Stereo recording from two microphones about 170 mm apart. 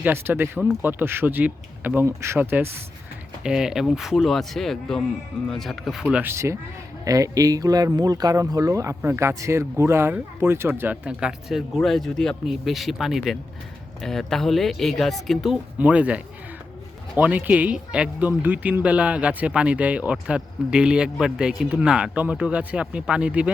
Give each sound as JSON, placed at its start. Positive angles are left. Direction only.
{"t": 0.0, "sound": "speech", "side_deg": -15}